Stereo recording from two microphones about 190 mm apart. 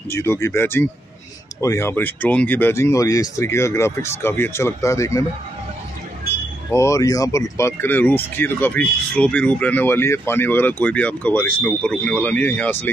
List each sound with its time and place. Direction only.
0.1 s speech: 15° left (ahead or behind)
6.7 s speech: 15° left (ahead or behind)